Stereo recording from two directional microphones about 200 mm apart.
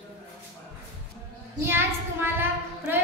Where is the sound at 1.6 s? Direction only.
10° right (ahead or behind).